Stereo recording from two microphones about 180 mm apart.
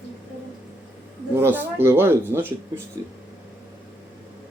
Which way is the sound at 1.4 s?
10° right (ahead or behind).